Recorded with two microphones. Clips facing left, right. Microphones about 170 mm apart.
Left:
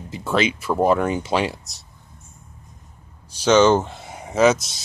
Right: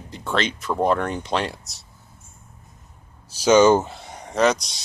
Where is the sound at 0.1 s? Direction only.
5° left (ahead or behind).